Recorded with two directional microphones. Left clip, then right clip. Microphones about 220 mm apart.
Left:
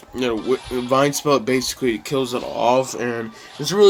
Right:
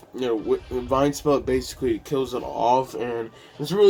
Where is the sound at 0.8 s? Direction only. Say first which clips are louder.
Left 4 dB; 35° left (ahead or behind).